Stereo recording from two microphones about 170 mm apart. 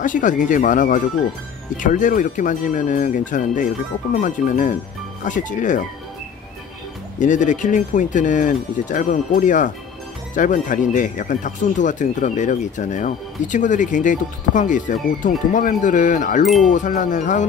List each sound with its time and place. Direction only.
0.0 s speech: 50° left (ahead or behind)
7.2 s speech: 50° left (ahead or behind)